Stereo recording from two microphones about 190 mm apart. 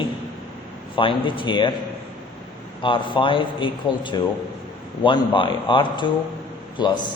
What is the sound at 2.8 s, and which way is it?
A man's voice, 25° left (ahead or behind).